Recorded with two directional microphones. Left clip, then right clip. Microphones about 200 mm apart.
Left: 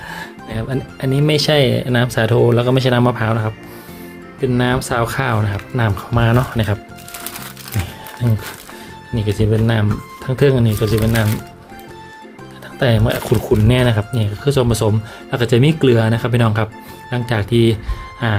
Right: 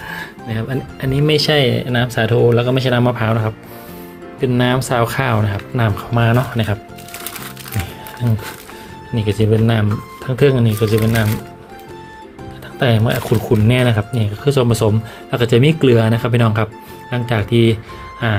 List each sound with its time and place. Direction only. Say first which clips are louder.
0.1 s music: right 2 dB; 20° left (ahead or behind)
1.0 s speech: right 1 dB; 25° left (ahead or behind)
4.4 s speech: right 1 dB; 5° left (ahead or behind)
5.7 s speech: even; 10° left (ahead or behind)
9.1 s speech: right 2 dB; 15° left (ahead or behind)
12.8 s speech: even; 15° left (ahead or behind)